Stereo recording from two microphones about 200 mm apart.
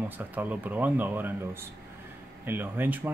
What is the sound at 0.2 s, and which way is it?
Speech, 10° right (ahead or behind).